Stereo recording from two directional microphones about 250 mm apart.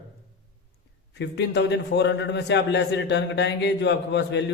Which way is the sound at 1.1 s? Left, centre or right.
Left.